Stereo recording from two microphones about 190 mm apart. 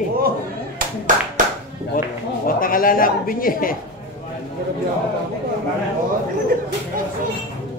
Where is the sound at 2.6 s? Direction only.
45° left (ahead or behind).